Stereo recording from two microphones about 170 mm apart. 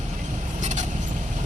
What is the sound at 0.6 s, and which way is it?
Vehicle, 45° right (ahead or behind).